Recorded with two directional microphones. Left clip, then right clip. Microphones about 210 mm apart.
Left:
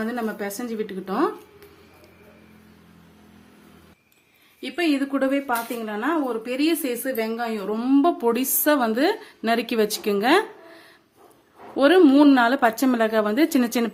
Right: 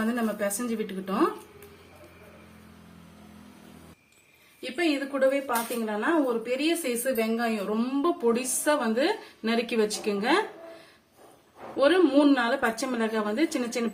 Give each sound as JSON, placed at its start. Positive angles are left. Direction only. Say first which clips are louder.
{"t": 0.0, "sound": "speech", "louder": "left 1 dB", "side_deg": 40}
{"t": 4.6, "sound": "a woman's voice", "louder": "left 4 dB", "side_deg": 45}
{"t": 11.8, "sound": "a woman's voice", "louder": "left 6 dB", "side_deg": 50}